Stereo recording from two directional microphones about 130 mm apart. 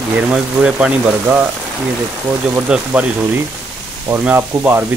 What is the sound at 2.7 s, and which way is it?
Speech, 10° right (ahead or behind).